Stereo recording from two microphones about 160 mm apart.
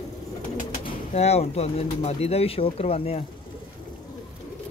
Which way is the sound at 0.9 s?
40° left (ahead or behind).